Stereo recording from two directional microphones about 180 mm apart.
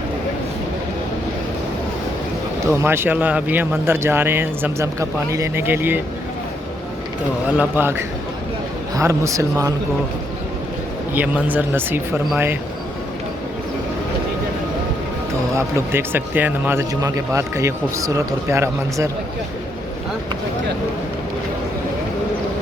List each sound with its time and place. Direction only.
2.7 s a man's voice: 15° right (ahead or behind)
7.5 s a man's voice: 10° right (ahead or behind)
11.1 s a man's voice: 10° right (ahead or behind)
15.5 s a man's voice: 15° right (ahead or behind)